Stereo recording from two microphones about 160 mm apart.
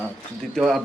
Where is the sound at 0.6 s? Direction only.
Centre (ahead or behind).